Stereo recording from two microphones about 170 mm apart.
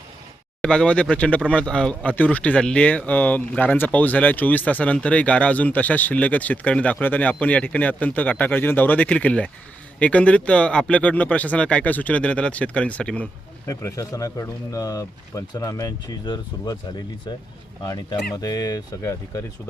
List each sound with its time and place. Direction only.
0.6 s speech: 5° left (ahead or behind)
13.7 s speech: 20° left (ahead or behind)
17.8 s speech: 20° left (ahead or behind)